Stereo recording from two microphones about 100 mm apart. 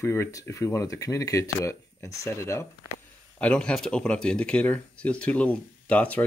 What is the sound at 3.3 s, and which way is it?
Speech, 10° left (ahead or behind).